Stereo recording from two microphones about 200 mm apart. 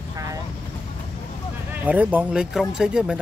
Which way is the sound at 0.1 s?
15° right (ahead or behind).